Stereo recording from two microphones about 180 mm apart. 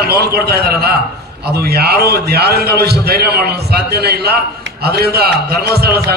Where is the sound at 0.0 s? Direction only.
60° right (ahead or behind).